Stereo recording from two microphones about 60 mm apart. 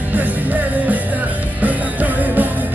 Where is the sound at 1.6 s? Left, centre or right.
Right.